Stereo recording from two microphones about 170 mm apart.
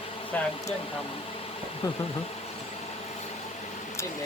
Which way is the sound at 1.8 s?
25° left (ahead or behind).